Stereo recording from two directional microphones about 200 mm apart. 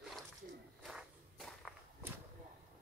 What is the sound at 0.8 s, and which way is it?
Walk, centre (ahead or behind).